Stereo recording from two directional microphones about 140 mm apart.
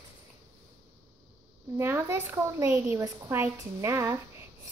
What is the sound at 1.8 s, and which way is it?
Speech, 15° right (ahead or behind).